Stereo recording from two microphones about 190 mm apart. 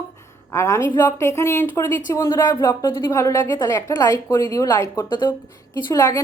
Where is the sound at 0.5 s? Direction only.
15° left (ahead or behind).